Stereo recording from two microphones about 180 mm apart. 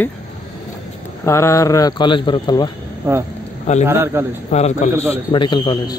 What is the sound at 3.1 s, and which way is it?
A man's voice, 15° right (ahead or behind).